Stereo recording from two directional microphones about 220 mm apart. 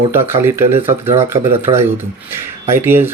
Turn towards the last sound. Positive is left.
turn(degrees=-10)  # may be behind; listen again after turning